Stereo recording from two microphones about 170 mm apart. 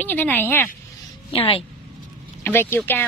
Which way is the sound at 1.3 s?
30° left (ahead or behind).